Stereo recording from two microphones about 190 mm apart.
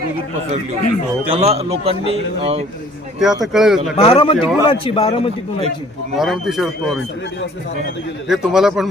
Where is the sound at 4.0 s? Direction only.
30° left (ahead or behind).